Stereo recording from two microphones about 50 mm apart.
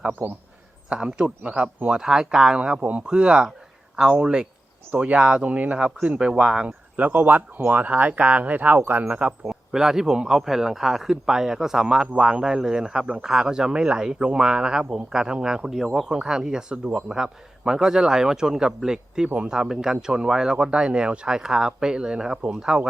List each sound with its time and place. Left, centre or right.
0.1 s a man's voice: right
0.9 s a man's voice: centre
6.9 s speech: right
9.0 s speech: right
9.5 s a man's voice: centre